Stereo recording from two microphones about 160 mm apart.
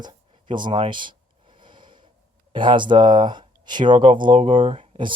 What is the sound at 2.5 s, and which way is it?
Speech, 30° right (ahead or behind).